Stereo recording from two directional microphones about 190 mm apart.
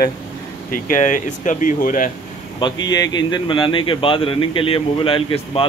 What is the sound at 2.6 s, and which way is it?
A man's voice, 20° left (ahead or behind).